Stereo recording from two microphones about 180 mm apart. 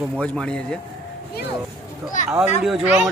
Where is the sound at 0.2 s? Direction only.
5° left (ahead or behind).